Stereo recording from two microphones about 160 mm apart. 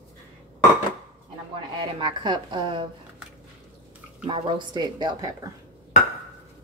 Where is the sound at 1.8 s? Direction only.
30° right (ahead or behind).